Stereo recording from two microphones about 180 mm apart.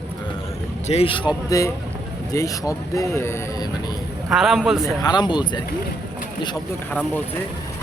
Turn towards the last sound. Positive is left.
turn(degrees=5)  # may be behind; listen again after turning